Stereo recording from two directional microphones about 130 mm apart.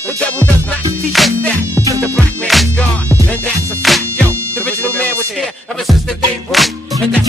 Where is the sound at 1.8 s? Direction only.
25° right (ahead or behind).